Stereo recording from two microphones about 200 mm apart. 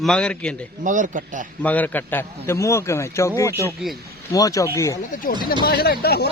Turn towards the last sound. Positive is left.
turn(degrees=50)  # may be behind; listen again after turning